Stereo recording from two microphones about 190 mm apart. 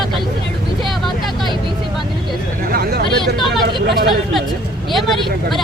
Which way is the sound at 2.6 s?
50° right (ahead or behind).